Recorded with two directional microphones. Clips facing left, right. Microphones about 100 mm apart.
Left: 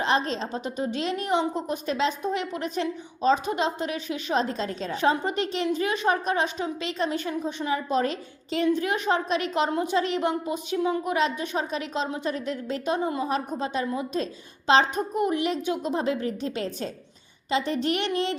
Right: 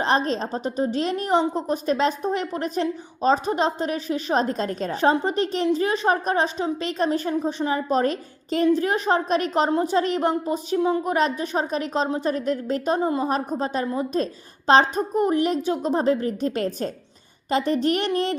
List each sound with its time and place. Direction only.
0.0 s a woman's voice: 40° right (ahead or behind)